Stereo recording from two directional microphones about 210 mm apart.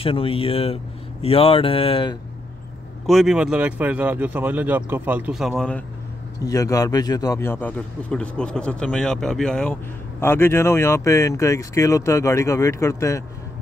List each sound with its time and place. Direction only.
0.0 s speech: 25° left (ahead or behind)
3.1 s speech: centre (ahead or behind)
6.4 s a man's voice: 15° left (ahead or behind)